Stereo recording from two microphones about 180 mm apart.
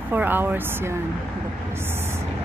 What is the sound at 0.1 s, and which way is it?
Speech, 10° right (ahead or behind).